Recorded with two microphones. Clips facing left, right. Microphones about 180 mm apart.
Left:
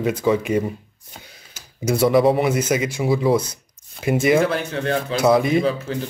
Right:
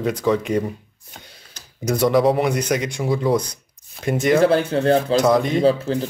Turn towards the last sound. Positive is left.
turn(degrees=-35)  # may be behind; listen again after turning